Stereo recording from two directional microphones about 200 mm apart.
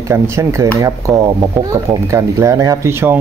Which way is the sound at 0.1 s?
15° right (ahead or behind).